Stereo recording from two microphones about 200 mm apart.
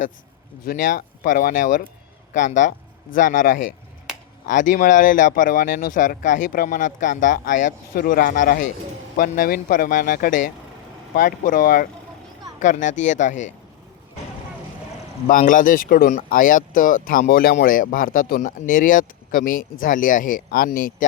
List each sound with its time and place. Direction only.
0.6 s speech: 45° left (ahead or behind)
15.3 s speech: 40° left (ahead or behind)